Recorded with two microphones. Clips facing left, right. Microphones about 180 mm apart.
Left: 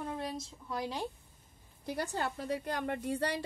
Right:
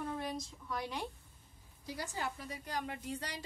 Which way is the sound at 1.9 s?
65° left (ahead or behind).